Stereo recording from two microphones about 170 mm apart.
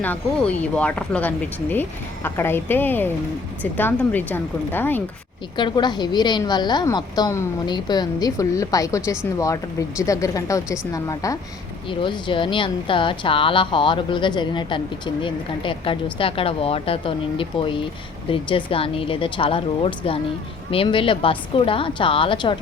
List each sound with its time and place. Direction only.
0.0 s speech: 10° left (ahead or behind)
5.5 s a woman's voice: 25° left (ahead or behind)